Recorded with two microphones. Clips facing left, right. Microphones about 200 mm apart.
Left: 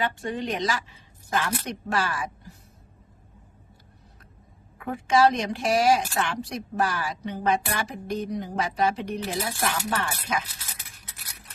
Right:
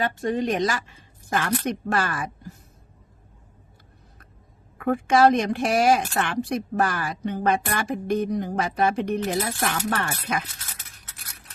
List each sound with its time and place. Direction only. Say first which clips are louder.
0.0 s a woman's voice: right 4 dB; 40° right (ahead or behind)
4.8 s speech: right 3 dB; 55° right (ahead or behind)